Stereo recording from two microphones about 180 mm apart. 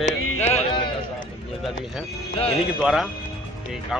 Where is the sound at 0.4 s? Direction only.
35° left (ahead or behind).